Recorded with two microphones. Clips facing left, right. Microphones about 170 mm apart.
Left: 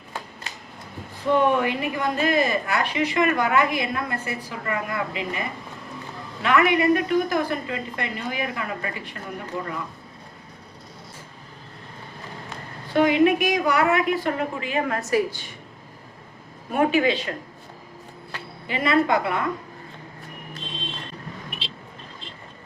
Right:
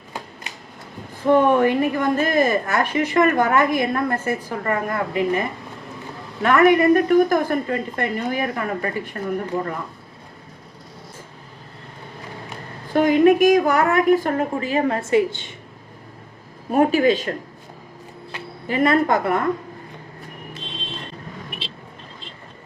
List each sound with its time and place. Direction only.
1.3 s a woman's voice: 45° right (ahead or behind)
12.9 s a woman's voice: 45° right (ahead or behind); by 15.5 s 25° right (ahead or behind)
16.7 s speech: 40° right (ahead or behind)
18.7 s a woman's voice: 50° right (ahead or behind)